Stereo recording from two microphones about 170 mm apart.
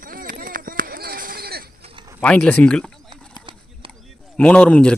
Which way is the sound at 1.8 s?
35° right (ahead or behind).